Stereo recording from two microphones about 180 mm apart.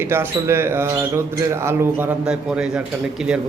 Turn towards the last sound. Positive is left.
turn(degrees=-5)  # may be behind; listen again after turning